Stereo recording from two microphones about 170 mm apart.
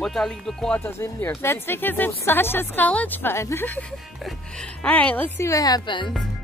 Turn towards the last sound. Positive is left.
turn(degrees=25)  # may be behind; listen again after turning